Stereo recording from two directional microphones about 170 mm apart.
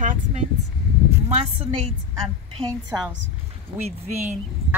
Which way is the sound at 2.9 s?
10° right (ahead or behind).